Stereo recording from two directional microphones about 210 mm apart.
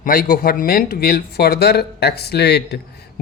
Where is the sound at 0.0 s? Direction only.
45° left (ahead or behind).